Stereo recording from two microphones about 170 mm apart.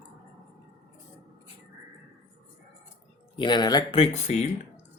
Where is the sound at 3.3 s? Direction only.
25° left (ahead or behind).